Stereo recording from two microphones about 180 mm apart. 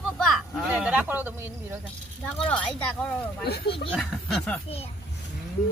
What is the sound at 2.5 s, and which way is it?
Speech, 5° left (ahead or behind).